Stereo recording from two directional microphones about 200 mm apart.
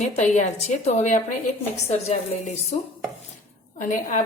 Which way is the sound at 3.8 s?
40° left (ahead or behind).